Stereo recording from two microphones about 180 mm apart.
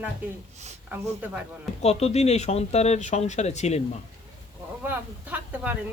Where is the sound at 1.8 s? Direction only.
35° left (ahead or behind).